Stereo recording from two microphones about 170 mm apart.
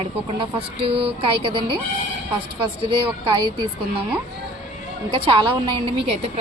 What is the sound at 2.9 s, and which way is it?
Speech, 30° right (ahead or behind).